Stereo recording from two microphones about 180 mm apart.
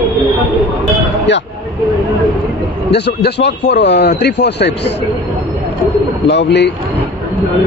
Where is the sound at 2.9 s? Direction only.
70° left (ahead or behind).